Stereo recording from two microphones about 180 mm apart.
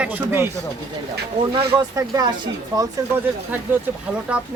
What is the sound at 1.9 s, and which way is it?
Speech, 20° right (ahead or behind).